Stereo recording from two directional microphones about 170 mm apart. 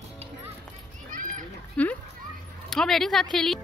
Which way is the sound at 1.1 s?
50° right (ahead or behind).